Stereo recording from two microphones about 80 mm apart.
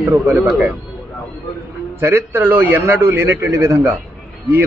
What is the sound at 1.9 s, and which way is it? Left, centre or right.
A man's voice, right.